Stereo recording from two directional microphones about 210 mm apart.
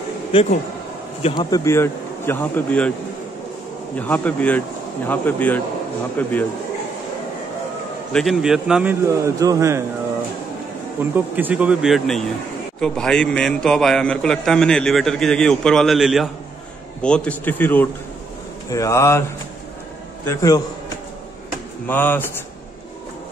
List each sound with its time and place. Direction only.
0.3 s a man's voice: 25° left (ahead or behind); by 2.9 s 5° left (ahead or behind)
3.9 s speech: 5° left (ahead or behind)
8.1 s a man's voice: centre (ahead or behind)
11.0 s a man's voice: 10° right (ahead or behind); by 19.2 s 15° left (ahead or behind)
20.2 s speech: 15° left (ahead or behind)
21.8 s speech: 10° left (ahead or behind)